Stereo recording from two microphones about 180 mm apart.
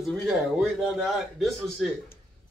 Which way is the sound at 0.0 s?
Centre (ahead or behind).